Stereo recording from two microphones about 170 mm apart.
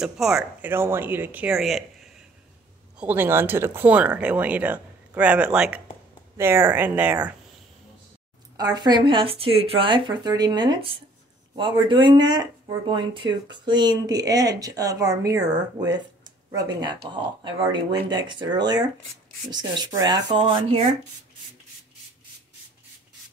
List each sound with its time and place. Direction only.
0.0 s speech: 5° right (ahead or behind)
3.0 s speech: 10° right (ahead or behind)
8.5 s speech: 25° right (ahead or behind)
16.3 s a sound: 25° right (ahead or behind)
17.1 s speech: 30° right (ahead or behind)